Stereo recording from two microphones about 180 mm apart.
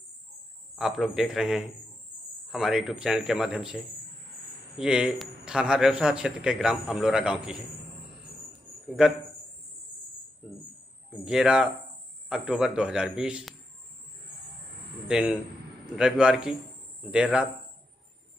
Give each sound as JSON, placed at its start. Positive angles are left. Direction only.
{"t": 0.7, "sound": "a man's voice", "side_deg": 0}
{"t": 8.8, "sound": "a man's voice", "side_deg": -5}
{"t": 11.2, "sound": "a man's voice", "side_deg": -5}
{"t": 15.0, "sound": "a man's voice", "side_deg": -5}